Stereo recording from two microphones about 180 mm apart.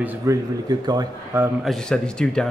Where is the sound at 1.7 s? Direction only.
5° left (ahead or behind).